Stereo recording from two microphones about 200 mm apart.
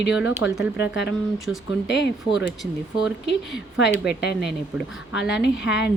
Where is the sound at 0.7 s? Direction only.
60° left (ahead or behind).